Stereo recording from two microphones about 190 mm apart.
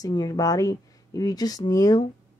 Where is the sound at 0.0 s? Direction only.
20° left (ahead or behind).